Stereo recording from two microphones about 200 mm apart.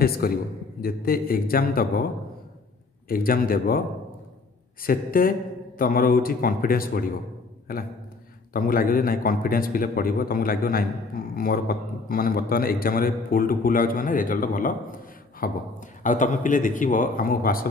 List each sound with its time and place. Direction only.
0.0 s a man's voice: 50° left (ahead or behind)
3.1 s a man's voice: 45° left (ahead or behind)
4.8 s a man's voice: 45° left (ahead or behind)